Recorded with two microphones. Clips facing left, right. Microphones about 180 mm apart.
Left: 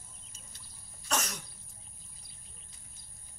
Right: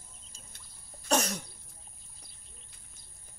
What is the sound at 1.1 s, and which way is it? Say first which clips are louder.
Cough: right 6 dB; 35° right (ahead or behind).